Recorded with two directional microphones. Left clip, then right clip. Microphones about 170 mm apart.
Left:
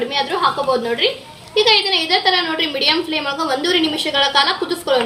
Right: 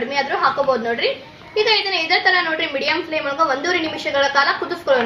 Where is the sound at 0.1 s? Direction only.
40° left (ahead or behind).